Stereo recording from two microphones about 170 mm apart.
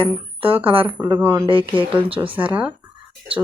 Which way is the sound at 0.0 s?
35° right (ahead or behind).